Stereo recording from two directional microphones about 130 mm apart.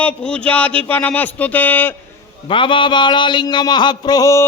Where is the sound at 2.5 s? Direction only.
40° left (ahead or behind); by 4.4 s 25° left (ahead or behind).